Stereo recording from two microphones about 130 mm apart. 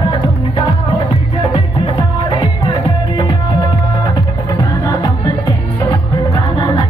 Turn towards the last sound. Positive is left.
turn(degrees=40)  # may be behind; listen again after turning